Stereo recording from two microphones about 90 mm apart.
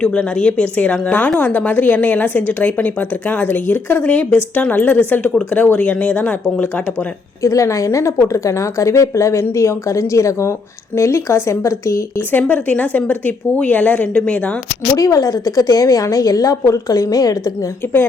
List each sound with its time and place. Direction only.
0.0 s a woman's voice: 10° left (ahead or behind)
7.4 s a woman's voice: 35° left (ahead or behind)
12.3 s speech: 20° left (ahead or behind)
14.9 s a woman's voice: 40° left (ahead or behind)